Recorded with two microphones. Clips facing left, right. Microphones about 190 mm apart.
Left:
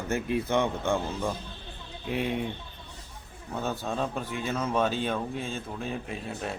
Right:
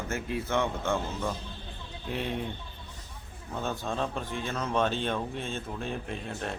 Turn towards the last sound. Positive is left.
turn(degrees=5)  # may be behind; listen again after turning